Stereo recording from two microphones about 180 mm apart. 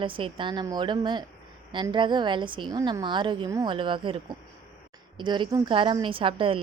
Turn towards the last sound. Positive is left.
turn(degrees=-30)  # may be behind; listen again after turning